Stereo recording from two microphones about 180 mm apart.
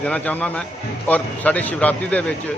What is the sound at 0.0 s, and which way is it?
A man's voice, 5° left (ahead or behind).